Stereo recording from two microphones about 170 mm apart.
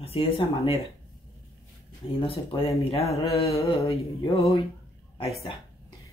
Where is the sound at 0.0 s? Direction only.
35° left (ahead or behind).